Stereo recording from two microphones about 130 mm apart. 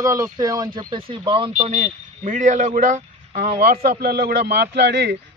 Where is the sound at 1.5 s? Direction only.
70° right (ahead or behind); by 3.5 s 85° right.